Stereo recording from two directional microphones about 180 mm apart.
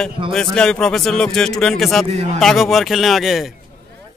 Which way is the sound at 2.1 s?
35° right (ahead or behind).